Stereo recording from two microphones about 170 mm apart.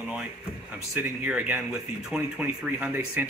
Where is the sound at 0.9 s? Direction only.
10° right (ahead or behind).